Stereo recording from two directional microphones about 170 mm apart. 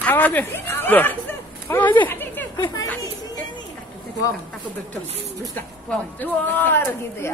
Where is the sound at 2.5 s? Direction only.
25° left (ahead or behind).